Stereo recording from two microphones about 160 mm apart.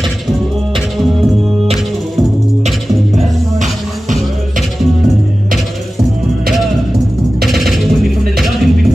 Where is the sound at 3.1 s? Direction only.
50° right (ahead or behind).